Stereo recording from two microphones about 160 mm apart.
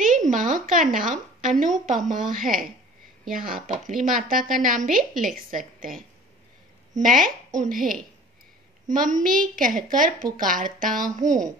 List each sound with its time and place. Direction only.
0.0 s a woman's voice: 55° right (ahead or behind)